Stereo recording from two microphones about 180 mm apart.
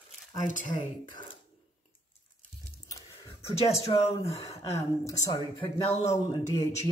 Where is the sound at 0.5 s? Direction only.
45° left (ahead or behind).